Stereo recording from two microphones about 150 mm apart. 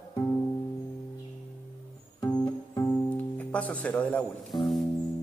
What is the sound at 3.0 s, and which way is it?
Speech, 10° left (ahead or behind).